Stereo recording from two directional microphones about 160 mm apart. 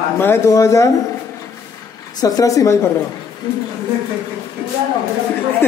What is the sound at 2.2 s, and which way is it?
Speech, 20° left (ahead or behind).